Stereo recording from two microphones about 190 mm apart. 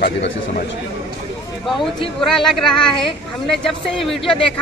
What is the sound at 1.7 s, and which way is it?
Speech, centre (ahead or behind).